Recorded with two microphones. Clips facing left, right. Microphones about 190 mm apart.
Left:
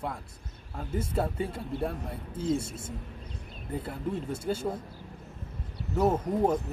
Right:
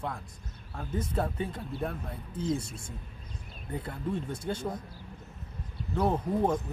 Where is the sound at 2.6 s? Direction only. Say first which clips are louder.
Left 4 dB; 25° left (ahead or behind).